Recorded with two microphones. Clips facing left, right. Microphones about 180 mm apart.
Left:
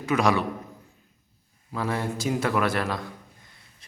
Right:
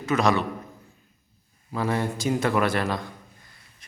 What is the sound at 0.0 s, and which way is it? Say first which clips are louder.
Speech: even; 10° left (ahead or behind).